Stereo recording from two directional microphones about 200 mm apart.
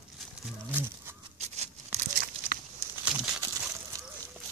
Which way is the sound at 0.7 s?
10° right (ahead or behind).